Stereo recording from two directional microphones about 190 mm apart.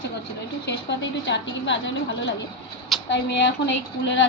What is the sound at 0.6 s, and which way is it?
A woman's voice, 65° left (ahead or behind).